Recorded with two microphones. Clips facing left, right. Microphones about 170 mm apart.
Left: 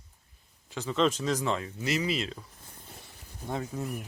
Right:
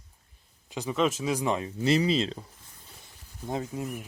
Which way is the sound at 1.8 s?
30° right (ahead or behind).